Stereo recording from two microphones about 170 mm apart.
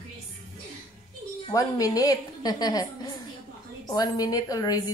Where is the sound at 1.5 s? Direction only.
20° left (ahead or behind).